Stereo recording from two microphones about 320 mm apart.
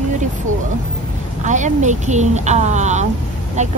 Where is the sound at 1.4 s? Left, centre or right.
Right.